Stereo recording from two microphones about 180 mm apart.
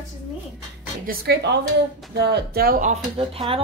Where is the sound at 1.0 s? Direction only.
65° right (ahead or behind); by 3.0 s 50° right (ahead or behind).